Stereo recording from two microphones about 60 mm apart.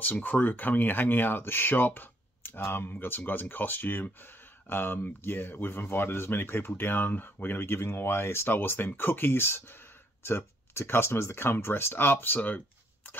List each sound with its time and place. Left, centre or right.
0.0 s speech: left